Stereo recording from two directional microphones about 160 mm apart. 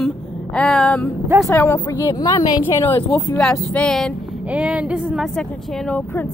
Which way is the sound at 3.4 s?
5° left (ahead or behind).